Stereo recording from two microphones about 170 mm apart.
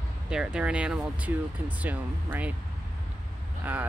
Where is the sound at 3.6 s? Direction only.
10° right (ahead or behind).